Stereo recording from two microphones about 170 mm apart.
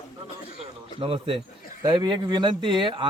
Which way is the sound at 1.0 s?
30° right (ahead or behind).